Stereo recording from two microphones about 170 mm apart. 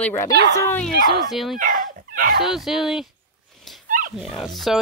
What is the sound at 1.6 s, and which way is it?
Dog, 55° right (ahead or behind).